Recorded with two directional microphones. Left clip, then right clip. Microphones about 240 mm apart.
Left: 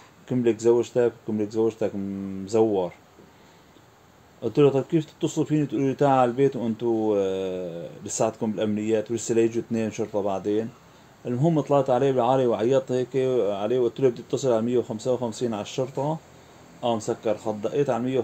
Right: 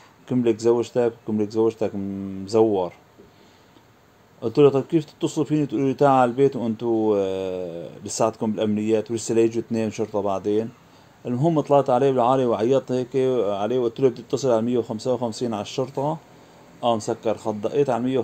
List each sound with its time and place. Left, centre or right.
0.3 s speech: right
4.4 s speech: right